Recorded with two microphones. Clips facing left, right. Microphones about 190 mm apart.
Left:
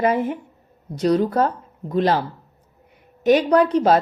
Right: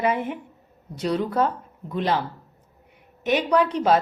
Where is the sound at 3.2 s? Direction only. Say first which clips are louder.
Left 5 dB; 40° left (ahead or behind).